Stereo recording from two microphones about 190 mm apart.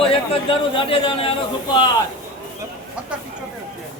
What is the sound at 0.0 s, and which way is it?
A man's voice, 30° left (ahead or behind).